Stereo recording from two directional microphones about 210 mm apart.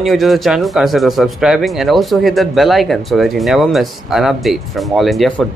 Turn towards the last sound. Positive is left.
turn(degrees=0)  # may be behind; listen again after turning